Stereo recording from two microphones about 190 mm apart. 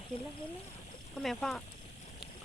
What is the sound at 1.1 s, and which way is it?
Speech, centre (ahead or behind).